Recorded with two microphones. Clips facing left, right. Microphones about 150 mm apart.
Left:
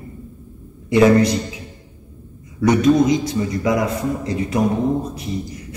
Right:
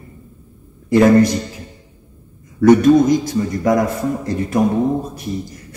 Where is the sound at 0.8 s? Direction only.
50° right (ahead or behind).